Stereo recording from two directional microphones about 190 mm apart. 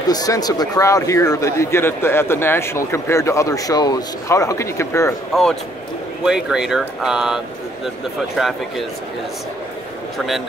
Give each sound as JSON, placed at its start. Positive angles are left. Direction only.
{"t": 0.1, "sound": "speech", "side_deg": 20}
{"t": 5.3, "sound": "speech", "side_deg": 0}
{"t": 10.1, "sound": "speech", "side_deg": 0}